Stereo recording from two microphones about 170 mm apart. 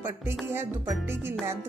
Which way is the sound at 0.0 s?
10° right (ahead or behind).